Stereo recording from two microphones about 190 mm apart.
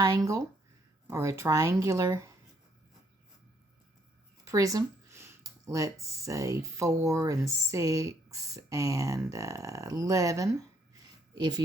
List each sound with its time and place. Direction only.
0.0 s speech: 20° right (ahead or behind)
4.4 s a woman's voice: 15° right (ahead or behind)